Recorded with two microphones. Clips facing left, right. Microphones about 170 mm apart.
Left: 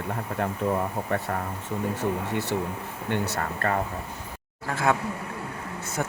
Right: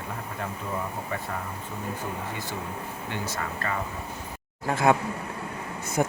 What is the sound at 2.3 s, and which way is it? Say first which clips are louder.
Speech: left 6 dB; 70° left (ahead or behind).